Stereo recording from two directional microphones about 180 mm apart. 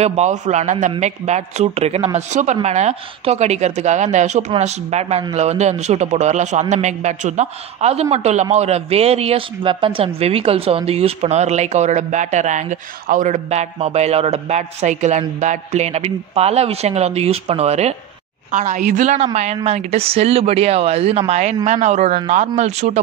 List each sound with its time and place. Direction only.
0.0 s a man's voice: 40° right (ahead or behind)